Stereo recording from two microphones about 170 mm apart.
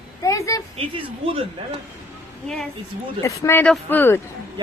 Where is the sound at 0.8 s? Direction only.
35° right (ahead or behind).